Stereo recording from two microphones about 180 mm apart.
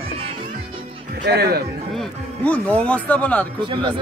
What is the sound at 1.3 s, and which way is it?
Speech, 60° right (ahead or behind).